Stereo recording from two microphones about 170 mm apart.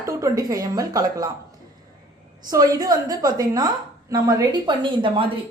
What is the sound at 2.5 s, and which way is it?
Speech, 20° right (ahead or behind).